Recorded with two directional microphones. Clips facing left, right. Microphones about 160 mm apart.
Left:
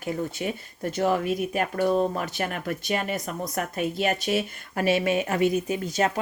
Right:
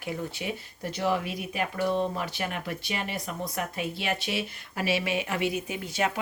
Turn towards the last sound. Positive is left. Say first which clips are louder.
# left 5 dB
turn(degrees=40)  # may be behind; listen again after turning